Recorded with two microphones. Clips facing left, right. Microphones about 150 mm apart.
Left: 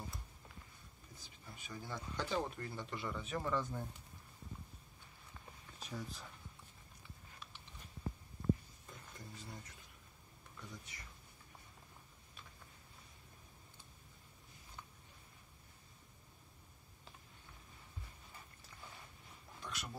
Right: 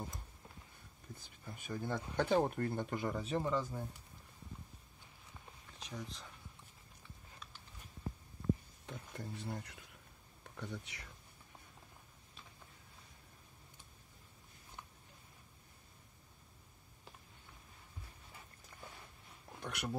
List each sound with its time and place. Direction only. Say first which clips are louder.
1.1 s speech: right 5 dB; 55° right (ahead or behind)
3.3 s speech: right 3 dB; 25° right (ahead or behind)
3.5 s speech: right 1 dB; 10° right (ahead or behind)
5.8 s speech: even; 5° left (ahead or behind)
8.8 s a sound: right 8 dB; 65° right (ahead or behind)
10.4 s speech: right 8 dB; 65° right (ahead or behind)
19.6 s speech: right 7 dB; 60° right (ahead or behind)